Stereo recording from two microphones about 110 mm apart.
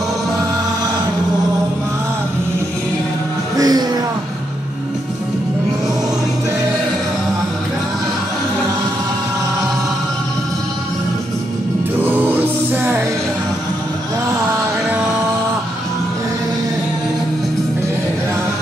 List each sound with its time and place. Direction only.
3.5 s music: 35° right (ahead or behind)
12.0 s music: 15° right (ahead or behind)